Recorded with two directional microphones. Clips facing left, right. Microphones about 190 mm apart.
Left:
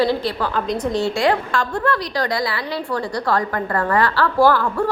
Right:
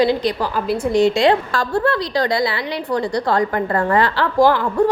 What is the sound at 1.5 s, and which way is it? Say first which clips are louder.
A woman's voice: right 2 dB; 30° right (ahead or behind).